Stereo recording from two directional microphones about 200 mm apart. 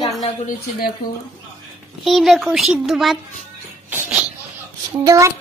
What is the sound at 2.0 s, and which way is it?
A child's voice, centre (ahead or behind).